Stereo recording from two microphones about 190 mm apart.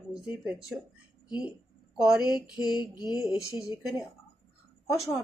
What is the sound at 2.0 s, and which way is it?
A woman's voice, 5° right (ahead or behind).